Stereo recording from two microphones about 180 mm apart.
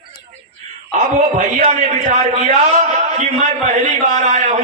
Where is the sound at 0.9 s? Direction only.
40° right (ahead or behind).